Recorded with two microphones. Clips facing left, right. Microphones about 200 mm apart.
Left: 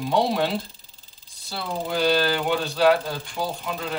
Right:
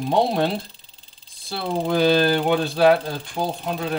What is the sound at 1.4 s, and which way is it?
Speech, 50° right (ahead or behind).